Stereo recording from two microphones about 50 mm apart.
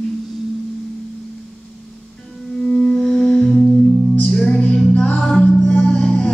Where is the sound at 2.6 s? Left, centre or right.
Centre.